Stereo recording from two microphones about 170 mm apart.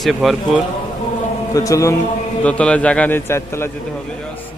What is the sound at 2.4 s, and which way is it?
A man's voice, 5° left (ahead or behind).